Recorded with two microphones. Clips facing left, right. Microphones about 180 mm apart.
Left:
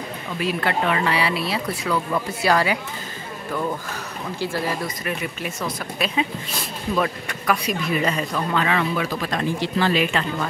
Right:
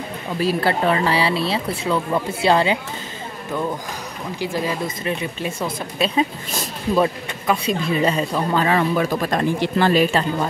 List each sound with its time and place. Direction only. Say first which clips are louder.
0.4 s speech: right 4 dB; 35° right (ahead or behind)
4.4 s speech: right 2 dB; 15° right (ahead or behind)
8.6 s speech: right 4 dB; 40° right (ahead or behind)